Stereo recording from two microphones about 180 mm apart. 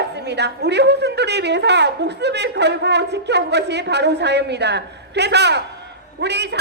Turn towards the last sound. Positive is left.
turn(degrees=-70)  # may be behind; listen again after turning